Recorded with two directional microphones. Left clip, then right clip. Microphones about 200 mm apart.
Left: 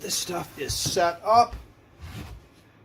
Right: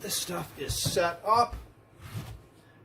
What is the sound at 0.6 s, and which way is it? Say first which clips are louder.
Speech: left 4 dB; 30° left (ahead or behind).